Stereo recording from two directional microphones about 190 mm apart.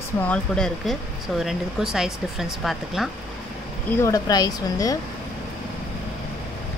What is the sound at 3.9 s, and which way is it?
Speech, 15° left (ahead or behind).